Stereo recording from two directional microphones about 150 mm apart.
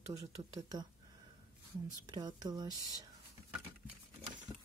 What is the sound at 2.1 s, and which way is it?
Speech, 25° right (ahead or behind).